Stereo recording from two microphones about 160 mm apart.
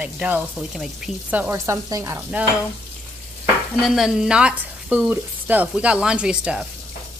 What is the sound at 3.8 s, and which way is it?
Speech, centre (ahead or behind).